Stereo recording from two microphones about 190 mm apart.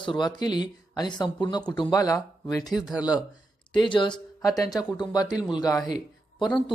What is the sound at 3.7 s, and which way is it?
Speech, 25° left (ahead or behind).